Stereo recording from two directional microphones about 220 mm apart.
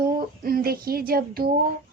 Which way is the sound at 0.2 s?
40° right (ahead or behind).